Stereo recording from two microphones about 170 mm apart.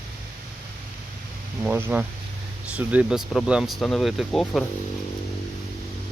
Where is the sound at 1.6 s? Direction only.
10° right (ahead or behind).